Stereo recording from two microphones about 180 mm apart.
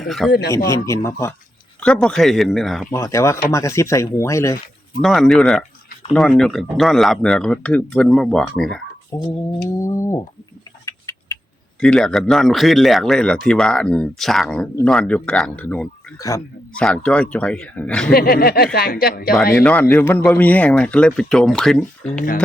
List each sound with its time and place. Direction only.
0.0 s a man's voice: centre (ahead or behind)
0.3 s speech: 65° left (ahead or behind)
0.9 s a man's voice: 15° left (ahead or behind)
1.8 s speech: 5° left (ahead or behind)
2.9 s a man's voice: 15° left (ahead or behind)
5.0 s speech: centre (ahead or behind)
9.1 s mantra: 20° left (ahead or behind)
9.8 s a man's voice: 15° left (ahead or behind)
10.8 s a sound: 15° left (ahead or behind)
11.8 s speech: 5° left (ahead or behind)
16.1 s a man's voice: 20° left (ahead or behind)
16.7 s a man's voice: 5° left (ahead or behind)
18.1 s speech: 55° left (ahead or behind)
19.5 s a man's voice: 10° left (ahead or behind)